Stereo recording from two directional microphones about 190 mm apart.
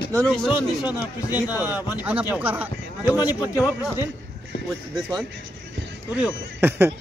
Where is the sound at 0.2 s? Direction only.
5° left (ahead or behind).